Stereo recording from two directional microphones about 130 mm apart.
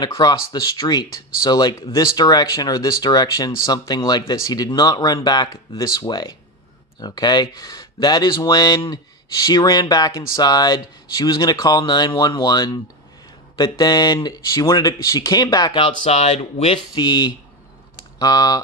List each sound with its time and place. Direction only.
0.0 s speech: 30° left (ahead or behind)
15.7 s speech: 50° left (ahead or behind)
16.9 s speech: 35° left (ahead or behind)